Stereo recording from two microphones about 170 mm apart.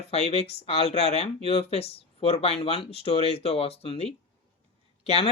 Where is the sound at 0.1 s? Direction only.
35° left (ahead or behind).